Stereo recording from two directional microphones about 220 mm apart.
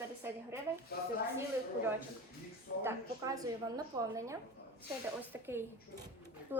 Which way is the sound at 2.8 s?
15° right (ahead or behind).